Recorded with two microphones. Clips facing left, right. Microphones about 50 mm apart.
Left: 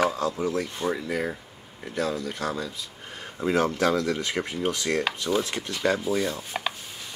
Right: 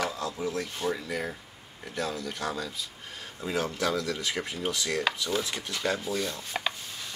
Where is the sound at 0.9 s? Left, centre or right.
Centre.